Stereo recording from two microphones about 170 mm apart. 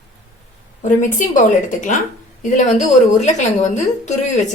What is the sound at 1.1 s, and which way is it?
A woman's voice, 50° left (ahead or behind).